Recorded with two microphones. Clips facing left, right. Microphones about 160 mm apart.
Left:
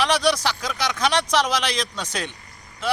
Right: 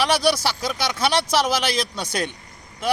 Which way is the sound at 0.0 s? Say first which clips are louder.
Right 1 dB; 10° right (ahead or behind).